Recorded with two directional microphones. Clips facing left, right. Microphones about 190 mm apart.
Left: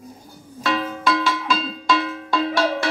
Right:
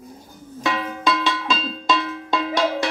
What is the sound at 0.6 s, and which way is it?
Music, 20° right (ahead or behind).